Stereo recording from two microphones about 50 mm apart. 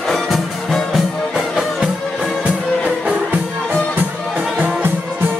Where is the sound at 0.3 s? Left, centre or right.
Centre.